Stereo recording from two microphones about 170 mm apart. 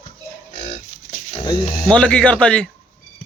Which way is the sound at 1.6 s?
45° left (ahead or behind).